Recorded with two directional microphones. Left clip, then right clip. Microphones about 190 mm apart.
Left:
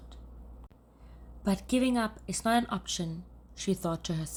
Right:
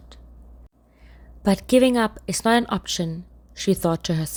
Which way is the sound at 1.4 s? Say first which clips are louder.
Right 13 dB; 45° right (ahead or behind).